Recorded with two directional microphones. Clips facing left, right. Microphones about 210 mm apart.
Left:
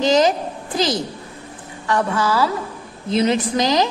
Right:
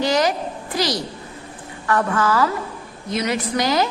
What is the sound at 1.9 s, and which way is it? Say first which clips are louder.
Speech: even; 10° left (ahead or behind).